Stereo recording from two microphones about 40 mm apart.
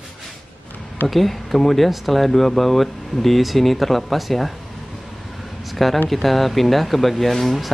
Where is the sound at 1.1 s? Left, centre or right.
Centre.